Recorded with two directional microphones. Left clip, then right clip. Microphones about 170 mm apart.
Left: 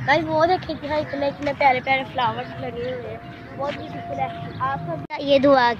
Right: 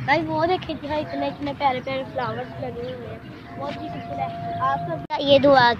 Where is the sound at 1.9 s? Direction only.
65° left (ahead or behind).